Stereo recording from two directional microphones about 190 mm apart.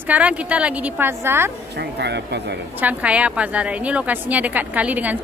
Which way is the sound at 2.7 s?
10° right (ahead or behind).